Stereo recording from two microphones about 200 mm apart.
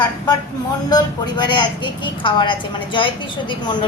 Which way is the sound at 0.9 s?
20° left (ahead or behind).